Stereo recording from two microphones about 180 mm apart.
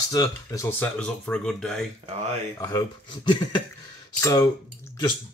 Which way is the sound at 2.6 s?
25° left (ahead or behind).